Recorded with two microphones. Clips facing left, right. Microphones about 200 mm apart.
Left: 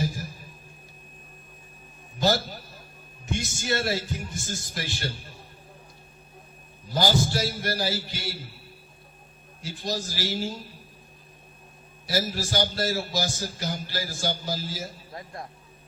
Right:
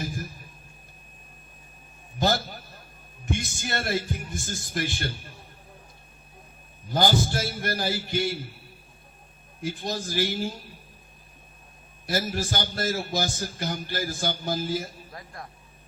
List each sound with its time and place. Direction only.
0.0 s a sound: 55° right (ahead or behind)
2.1 s a sound: 55° right (ahead or behind)
3.3 s a man's voice: 55° right (ahead or behind)
6.9 s a man's voice: 55° right (ahead or behind)
9.6 s a man's voice: 55° right (ahead or behind)
12.0 s a man's voice: 55° right (ahead or behind)
15.1 s speech: 25° left (ahead or behind)